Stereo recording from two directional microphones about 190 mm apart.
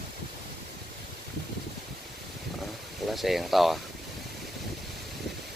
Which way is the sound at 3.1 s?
Centre (ahead or behind).